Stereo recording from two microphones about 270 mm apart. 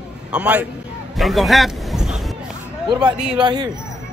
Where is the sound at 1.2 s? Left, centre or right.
Centre.